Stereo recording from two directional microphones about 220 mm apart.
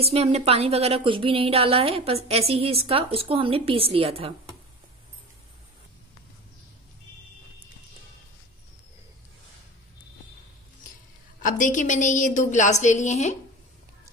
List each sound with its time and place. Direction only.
0.0 s a woman's voice: 30° right (ahead or behind)
11.4 s a woman's voice: 35° left (ahead or behind)